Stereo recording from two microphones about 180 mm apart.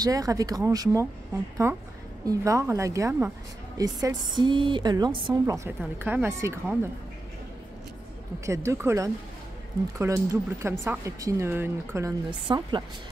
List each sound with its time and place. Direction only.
0.0 s a woman's voice: 20° right (ahead or behind)
8.5 s speech: 15° right (ahead or behind)